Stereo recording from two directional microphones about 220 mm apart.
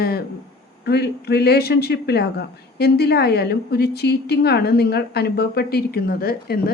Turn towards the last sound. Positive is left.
turn(degrees=45)  # may be behind; listen again after turning